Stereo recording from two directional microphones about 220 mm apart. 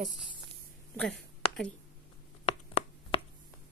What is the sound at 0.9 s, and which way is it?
Speech, centre (ahead or behind).